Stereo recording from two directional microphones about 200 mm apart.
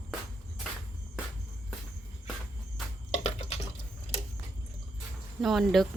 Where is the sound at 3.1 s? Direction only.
30° left (ahead or behind).